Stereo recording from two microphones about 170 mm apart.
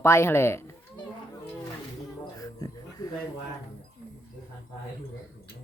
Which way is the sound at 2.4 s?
20° left (ahead or behind).